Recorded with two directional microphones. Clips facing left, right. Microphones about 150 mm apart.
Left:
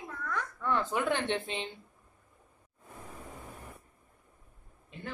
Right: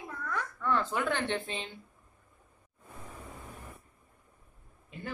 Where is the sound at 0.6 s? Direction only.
15° left (ahead or behind).